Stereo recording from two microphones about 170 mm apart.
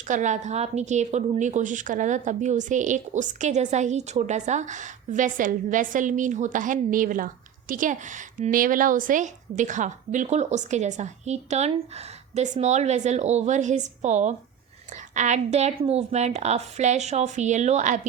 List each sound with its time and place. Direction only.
0.1 s a woman's voice: 45° right (ahead or behind)